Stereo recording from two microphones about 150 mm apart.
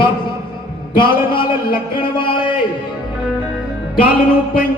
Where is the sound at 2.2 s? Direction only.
35° left (ahead or behind).